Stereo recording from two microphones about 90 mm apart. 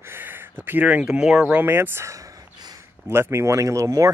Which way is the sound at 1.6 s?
25° right (ahead or behind).